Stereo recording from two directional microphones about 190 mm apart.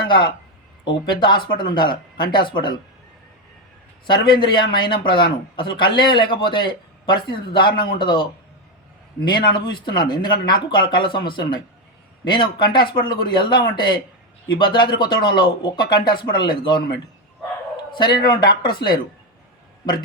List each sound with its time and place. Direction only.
0.1 s a man's voice: 25° left (ahead or behind)
4.3 s a man's voice: 25° left (ahead or behind)